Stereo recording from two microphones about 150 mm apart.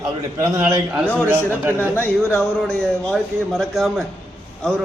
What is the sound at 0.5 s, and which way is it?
Speech, 20° right (ahead or behind).